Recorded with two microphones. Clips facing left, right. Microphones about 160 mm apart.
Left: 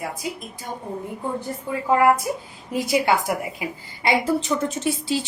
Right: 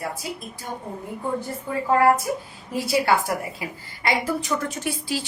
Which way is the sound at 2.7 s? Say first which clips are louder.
Left 1 dB; 20° left (ahead or behind).